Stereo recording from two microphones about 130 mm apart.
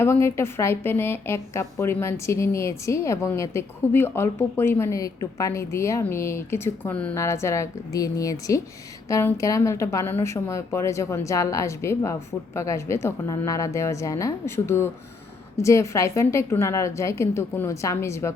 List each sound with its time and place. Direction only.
0.0 s a woman's voice: 20° left (ahead or behind)